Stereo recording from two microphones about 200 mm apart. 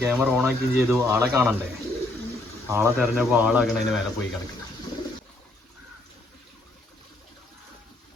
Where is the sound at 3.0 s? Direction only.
Centre (ahead or behind).